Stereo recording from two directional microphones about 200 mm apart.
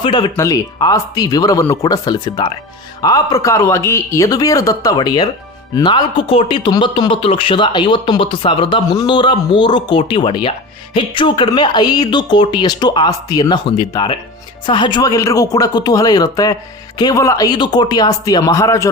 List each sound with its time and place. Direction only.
0.0 s speech: 20° left (ahead or behind)